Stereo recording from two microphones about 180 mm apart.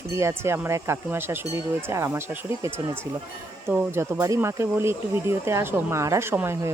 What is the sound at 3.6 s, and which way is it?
Speech, 10° right (ahead or behind).